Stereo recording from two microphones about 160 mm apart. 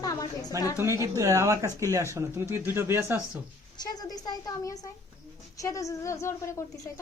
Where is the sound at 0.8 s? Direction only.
20° right (ahead or behind).